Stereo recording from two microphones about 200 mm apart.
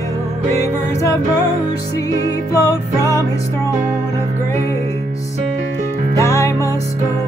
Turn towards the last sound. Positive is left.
turn(degrees=15)  # may be behind; listen again after turning